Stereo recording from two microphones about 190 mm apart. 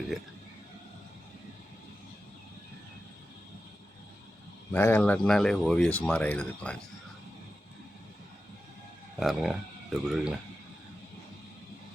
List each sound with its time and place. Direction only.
4.7 s speech: 10° left (ahead or behind)
9.1 s speech: centre (ahead or behind)